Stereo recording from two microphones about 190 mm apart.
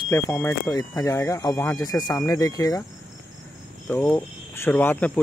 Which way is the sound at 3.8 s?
10° left (ahead or behind).